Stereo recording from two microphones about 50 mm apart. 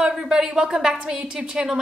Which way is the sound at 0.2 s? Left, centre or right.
Centre.